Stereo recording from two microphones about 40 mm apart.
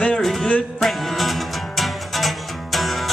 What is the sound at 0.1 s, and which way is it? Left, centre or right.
Music, centre.